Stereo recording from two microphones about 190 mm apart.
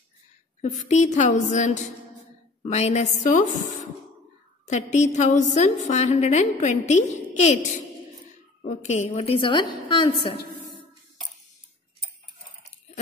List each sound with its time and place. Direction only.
0.6 s a woman's voice: 40° left (ahead or behind)
4.6 s a woman's voice: 40° left (ahead or behind)